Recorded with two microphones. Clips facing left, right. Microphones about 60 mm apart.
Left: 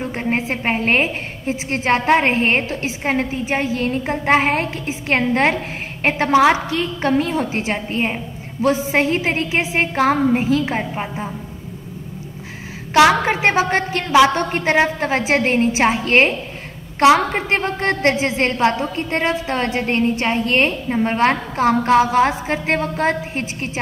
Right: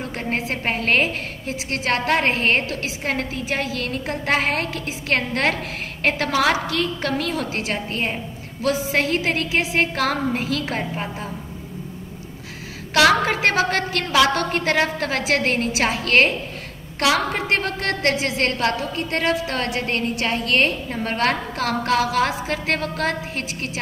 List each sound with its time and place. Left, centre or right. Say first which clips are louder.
0.0 s a woman's voice: left 4 dB; centre
13.2 s a woman's voice: left 3 dB; left